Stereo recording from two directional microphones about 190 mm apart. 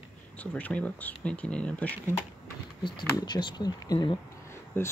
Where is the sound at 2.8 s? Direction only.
25° left (ahead or behind).